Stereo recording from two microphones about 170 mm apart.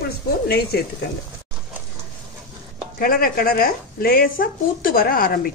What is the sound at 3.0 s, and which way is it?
Speech, 60° left (ahead or behind).